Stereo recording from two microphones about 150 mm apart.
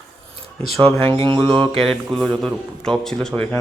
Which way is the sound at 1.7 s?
Centre (ahead or behind).